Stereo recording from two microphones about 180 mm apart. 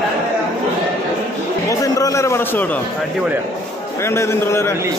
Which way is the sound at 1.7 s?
20° left (ahead or behind).